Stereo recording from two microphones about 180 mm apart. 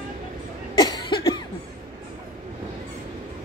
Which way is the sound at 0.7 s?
25° left (ahead or behind).